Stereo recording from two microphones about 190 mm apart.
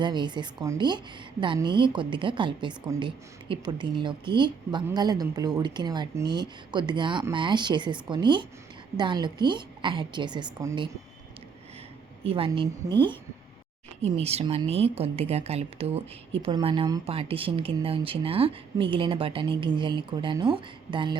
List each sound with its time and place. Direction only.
0.0 s speech: 25° right (ahead or behind)
12.2 s a woman's voice: 30° right (ahead or behind)